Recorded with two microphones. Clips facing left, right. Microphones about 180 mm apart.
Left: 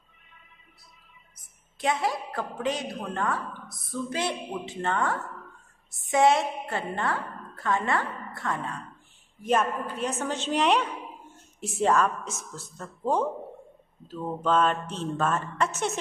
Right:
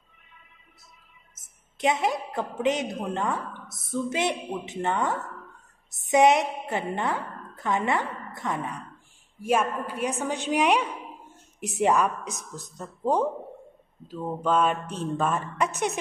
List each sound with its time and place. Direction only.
1.3 s a woman's voice: 20° right (ahead or behind)